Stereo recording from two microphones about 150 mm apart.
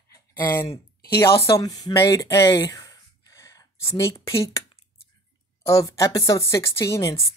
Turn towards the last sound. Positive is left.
turn(degrees=20)  # may be behind; listen again after turning